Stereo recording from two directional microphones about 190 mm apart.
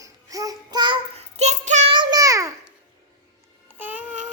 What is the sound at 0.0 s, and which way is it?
Babbling, 20° right (ahead or behind).